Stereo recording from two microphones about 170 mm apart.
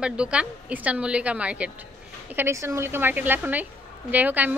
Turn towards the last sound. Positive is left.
turn(degrees=-10)  # may be behind; listen again after turning